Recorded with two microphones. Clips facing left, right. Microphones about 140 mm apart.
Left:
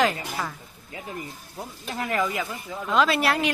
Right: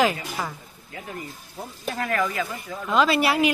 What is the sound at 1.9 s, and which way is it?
Speech, 20° left (ahead or behind).